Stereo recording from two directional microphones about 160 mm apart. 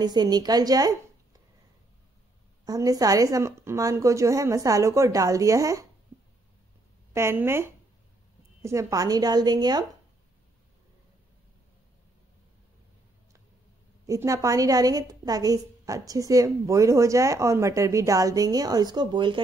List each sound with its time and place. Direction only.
0.0 s a woman's voice: 25° right (ahead or behind)
2.6 s a woman's voice: 20° right (ahead or behind)
7.2 s a woman's voice: 15° right (ahead or behind)
14.0 s a woman's voice: 20° right (ahead or behind)